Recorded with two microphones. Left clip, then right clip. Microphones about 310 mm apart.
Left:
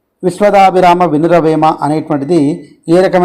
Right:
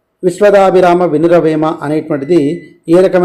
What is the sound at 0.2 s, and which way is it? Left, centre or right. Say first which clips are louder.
A man's voice: even; centre.